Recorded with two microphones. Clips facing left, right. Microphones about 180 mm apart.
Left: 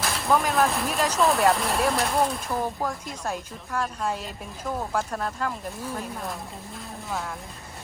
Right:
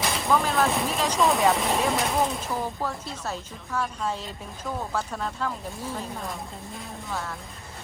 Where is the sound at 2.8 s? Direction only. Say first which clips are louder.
Left 1 dB; 10° left (ahead or behind).